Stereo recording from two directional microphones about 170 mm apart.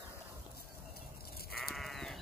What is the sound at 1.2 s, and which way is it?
Sheep, 65° left (ahead or behind).